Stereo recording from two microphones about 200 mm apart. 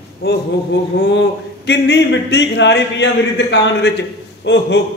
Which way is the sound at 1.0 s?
60° left (ahead or behind).